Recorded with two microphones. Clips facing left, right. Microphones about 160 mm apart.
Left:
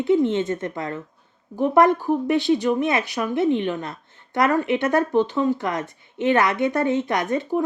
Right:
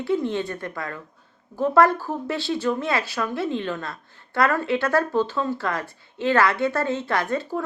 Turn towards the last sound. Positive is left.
turn(degrees=20)  # may be behind; listen again after turning